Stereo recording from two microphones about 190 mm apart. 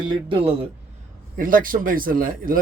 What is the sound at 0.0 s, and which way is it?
Speech, 25° right (ahead or behind).